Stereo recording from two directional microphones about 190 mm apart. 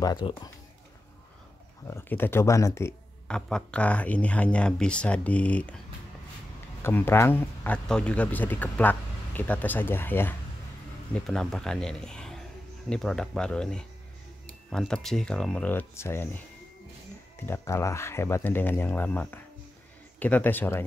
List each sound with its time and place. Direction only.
0.0 s speech: 20° left (ahead or behind)
1.9 s speech: 10° left (ahead or behind)
6.8 s speech: 10° left (ahead or behind)